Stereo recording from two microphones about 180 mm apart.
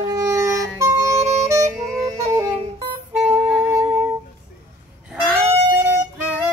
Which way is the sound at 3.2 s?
5° right (ahead or behind).